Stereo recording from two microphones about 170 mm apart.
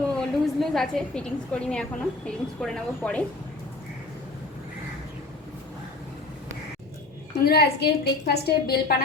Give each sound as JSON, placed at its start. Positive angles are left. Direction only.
{"t": 0.1, "sound": "a woman's voice", "side_deg": 5}
{"t": 7.4, "sound": "a woman's voice", "side_deg": 70}